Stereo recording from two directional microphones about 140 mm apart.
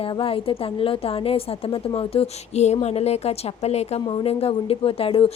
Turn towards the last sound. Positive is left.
turn(degrees=40)  # may be behind; listen again after turning